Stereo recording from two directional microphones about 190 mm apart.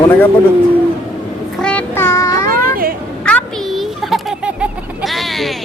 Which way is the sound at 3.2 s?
5° left (ahead or behind).